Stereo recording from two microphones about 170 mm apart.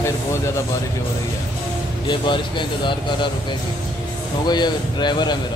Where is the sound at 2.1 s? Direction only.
30° left (ahead or behind).